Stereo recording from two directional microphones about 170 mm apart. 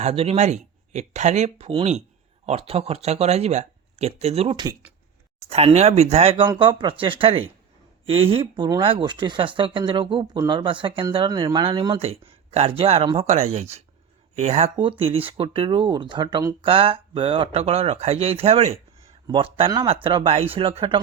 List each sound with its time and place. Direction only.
0.0 s speech: 40° right (ahead or behind)
11.9 s speech: 35° right (ahead or behind)